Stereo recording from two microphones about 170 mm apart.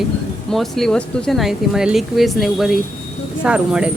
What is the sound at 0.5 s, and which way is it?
Speech, centre (ahead or behind).